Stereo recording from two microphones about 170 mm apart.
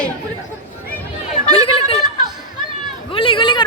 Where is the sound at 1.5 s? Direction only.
30° left (ahead or behind).